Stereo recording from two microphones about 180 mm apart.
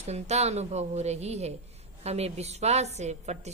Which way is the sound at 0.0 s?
35° right (ahead or behind).